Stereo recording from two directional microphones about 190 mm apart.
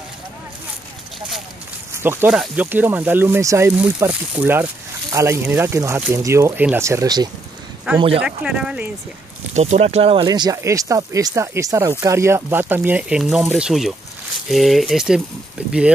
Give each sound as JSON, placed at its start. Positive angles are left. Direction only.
{"t": 2.0, "sound": "speech", "side_deg": -10}
{"t": 7.9, "sound": "speech", "side_deg": -10}
{"t": 9.5, "sound": "speech", "side_deg": -35}